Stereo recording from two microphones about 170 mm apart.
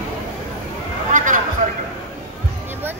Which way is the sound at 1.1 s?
50° right (ahead or behind).